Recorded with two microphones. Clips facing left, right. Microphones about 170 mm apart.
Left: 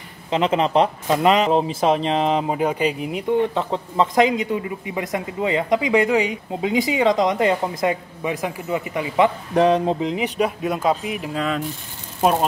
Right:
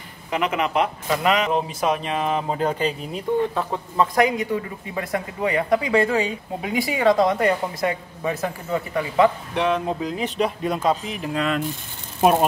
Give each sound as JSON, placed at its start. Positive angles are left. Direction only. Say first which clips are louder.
{"t": 0.3, "sound": "speech", "louder": "left 4 dB", "side_deg": 30}
{"t": 9.5, "sound": "speech", "louder": "left 5 dB", "side_deg": 40}